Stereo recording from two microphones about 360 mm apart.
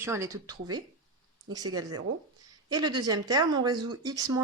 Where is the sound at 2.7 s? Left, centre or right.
Centre.